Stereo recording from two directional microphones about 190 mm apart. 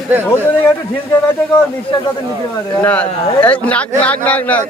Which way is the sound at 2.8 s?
10° left (ahead or behind).